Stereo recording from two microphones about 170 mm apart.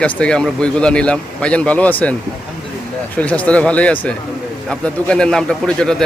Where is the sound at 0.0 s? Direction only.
5° left (ahead or behind).